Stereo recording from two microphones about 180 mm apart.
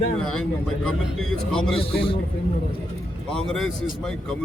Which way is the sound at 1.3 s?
Centre (ahead or behind).